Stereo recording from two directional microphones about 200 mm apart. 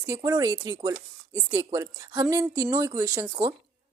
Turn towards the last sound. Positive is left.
turn(degrees=-10)  # may be behind; listen again after turning